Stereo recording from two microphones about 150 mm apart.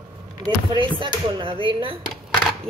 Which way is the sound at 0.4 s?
30° right (ahead or behind).